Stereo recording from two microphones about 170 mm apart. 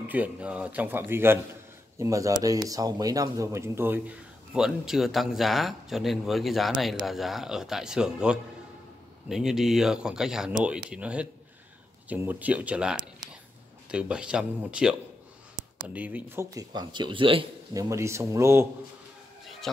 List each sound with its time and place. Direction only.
0.1 s speech: 10° right (ahead or behind)
16.5 s speech: 25° right (ahead or behind)
17.7 s speech: 15° right (ahead or behind)
19.6 s speech: centre (ahead or behind)